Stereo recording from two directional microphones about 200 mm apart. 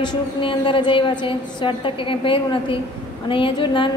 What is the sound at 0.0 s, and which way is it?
A woman's voice, 25° left (ahead or behind).